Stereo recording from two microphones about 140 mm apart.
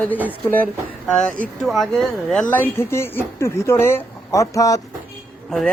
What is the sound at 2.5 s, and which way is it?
Speech, 15° left (ahead or behind).